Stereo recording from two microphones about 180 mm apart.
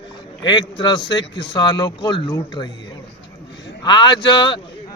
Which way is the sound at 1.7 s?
30° left (ahead or behind).